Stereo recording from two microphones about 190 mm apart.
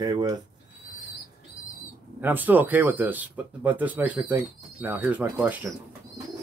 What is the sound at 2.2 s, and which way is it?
Speech, 10° right (ahead or behind).